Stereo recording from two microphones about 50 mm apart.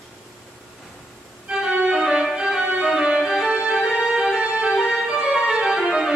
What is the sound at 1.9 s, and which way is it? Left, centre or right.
Music, centre.